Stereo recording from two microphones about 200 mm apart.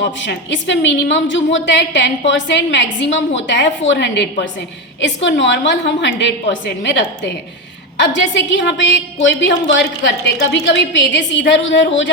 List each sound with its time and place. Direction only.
0.2 s a woman's voice: 65° left (ahead or behind)
8.0 s a woman's voice: 65° left (ahead or behind)